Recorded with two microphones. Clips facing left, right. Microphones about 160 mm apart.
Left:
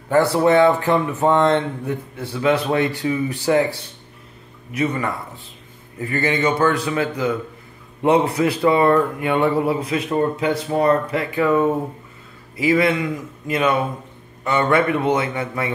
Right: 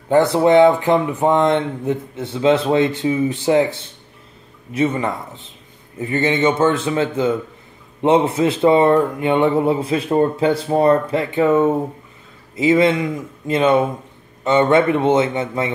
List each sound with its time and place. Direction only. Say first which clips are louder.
0.1 s speech: right 2 dB; 20° right (ahead or behind)